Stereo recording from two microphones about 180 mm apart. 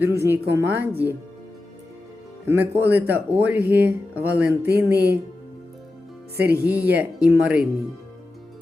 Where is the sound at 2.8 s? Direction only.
65° right (ahead or behind).